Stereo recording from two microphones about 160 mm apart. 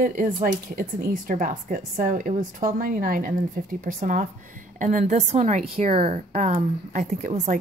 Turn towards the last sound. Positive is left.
turn(degrees=-45)  # may be behind; listen again after turning